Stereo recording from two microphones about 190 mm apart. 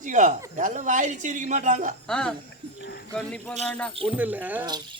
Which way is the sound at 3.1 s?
5° left (ahead or behind).